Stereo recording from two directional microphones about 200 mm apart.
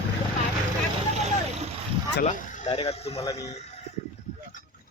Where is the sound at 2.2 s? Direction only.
40° left (ahead or behind).